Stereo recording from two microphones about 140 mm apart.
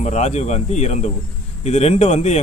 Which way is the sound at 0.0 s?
55° left (ahead or behind).